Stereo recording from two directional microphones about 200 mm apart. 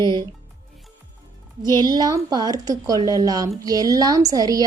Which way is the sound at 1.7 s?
20° right (ahead or behind).